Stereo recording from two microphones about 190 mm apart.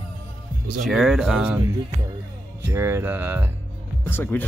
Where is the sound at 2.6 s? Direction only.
15° right (ahead or behind).